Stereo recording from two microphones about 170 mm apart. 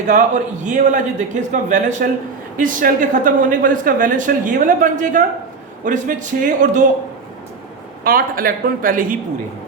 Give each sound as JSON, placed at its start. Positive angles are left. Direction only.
{"t": 0.1, "sound": "speech", "side_deg": -50}
{"t": 8.0, "sound": "a man's voice", "side_deg": -60}